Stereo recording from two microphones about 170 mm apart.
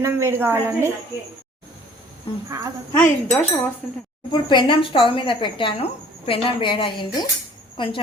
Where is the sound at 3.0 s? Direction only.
10° left (ahead or behind).